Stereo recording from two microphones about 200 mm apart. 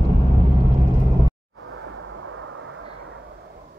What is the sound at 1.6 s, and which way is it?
Vehicle, 90° right.